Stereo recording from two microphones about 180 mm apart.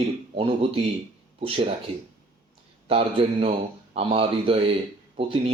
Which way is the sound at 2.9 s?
30° right (ahead or behind).